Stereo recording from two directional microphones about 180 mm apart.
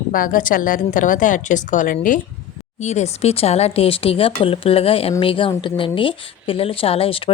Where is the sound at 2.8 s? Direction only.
40° left (ahead or behind).